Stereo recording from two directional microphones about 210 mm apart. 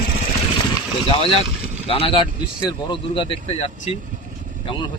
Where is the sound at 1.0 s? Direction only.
25° left (ahead or behind).